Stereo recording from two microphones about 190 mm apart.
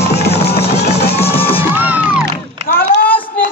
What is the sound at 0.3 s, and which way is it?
Music, 55° left (ahead or behind).